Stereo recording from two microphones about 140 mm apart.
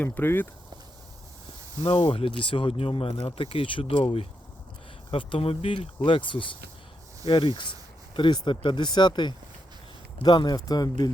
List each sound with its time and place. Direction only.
0.0 s speech: 15° left (ahead or behind)
1.8 s speech: 40° left (ahead or behind)